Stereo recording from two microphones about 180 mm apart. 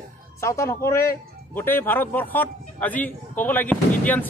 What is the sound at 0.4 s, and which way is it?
A man's voice, 15° left (ahead or behind).